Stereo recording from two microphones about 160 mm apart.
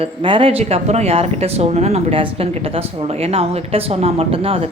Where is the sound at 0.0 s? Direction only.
35° right (ahead or behind).